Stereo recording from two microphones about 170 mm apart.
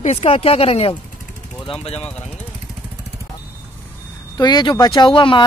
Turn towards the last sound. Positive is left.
turn(degrees=30)  # may be behind; listen again after turning